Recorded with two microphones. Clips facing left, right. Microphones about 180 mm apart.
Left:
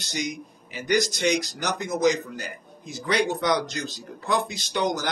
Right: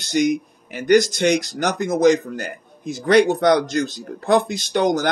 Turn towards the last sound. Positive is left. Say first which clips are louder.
# right 7 dB
turn(degrees=-55)  # may be behind; listen again after turning